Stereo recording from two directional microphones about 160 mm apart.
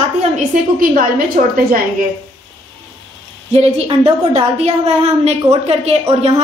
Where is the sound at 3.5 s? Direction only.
40° right (ahead or behind).